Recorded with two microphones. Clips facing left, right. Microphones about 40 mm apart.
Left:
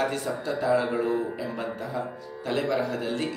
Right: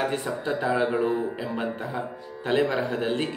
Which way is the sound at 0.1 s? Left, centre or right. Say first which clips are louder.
Right 2 dB; right.